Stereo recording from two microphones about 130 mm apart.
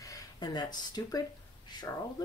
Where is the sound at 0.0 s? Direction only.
30° left (ahead or behind).